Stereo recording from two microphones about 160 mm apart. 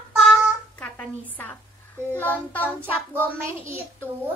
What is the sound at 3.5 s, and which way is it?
Speech, 15° right (ahead or behind).